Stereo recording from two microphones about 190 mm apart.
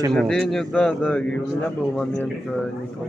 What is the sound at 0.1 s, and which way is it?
Speech, 5° left (ahead or behind).